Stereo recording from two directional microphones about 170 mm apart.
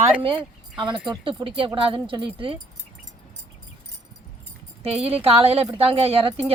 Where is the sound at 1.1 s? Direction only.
30° right (ahead or behind).